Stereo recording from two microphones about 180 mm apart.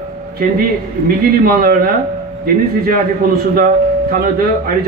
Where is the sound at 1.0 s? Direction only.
55° right (ahead or behind).